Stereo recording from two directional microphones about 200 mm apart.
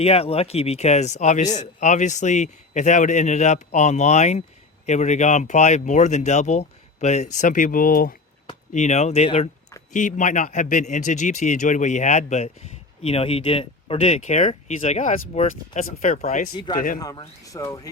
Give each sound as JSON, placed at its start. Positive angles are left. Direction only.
{"t": 0.0, "sound": "speech", "side_deg": 30}
{"t": 8.7, "sound": "speech", "side_deg": 35}
{"t": 17.0, "sound": "speech", "side_deg": 20}